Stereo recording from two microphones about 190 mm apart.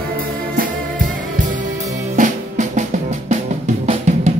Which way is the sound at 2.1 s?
40° right (ahead or behind).